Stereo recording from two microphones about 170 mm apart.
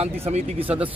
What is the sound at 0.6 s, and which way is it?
Speech, 10° right (ahead or behind).